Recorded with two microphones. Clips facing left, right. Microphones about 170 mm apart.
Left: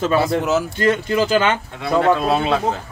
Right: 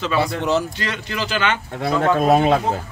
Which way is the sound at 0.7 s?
50° left (ahead or behind).